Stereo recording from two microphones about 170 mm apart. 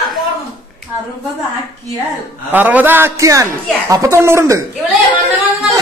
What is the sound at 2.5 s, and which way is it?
Speech, 10° right (ahead or behind).